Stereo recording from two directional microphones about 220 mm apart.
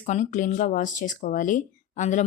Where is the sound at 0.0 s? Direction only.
30° left (ahead or behind).